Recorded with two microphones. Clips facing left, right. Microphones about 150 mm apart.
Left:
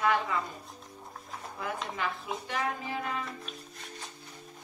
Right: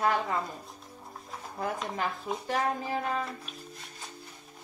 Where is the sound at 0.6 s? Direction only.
Centre (ahead or behind).